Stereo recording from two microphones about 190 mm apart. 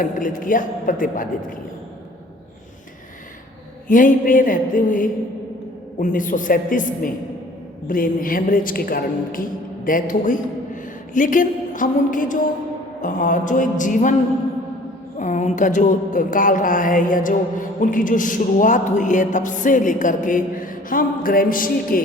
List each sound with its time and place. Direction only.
0.0 s speech: 45° left (ahead or behind)
3.8 s speech: 45° left (ahead or behind)
15.2 s speech: 40° left (ahead or behind)